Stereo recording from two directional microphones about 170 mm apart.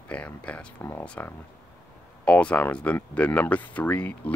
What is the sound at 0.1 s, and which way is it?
Speech, 5° left (ahead or behind).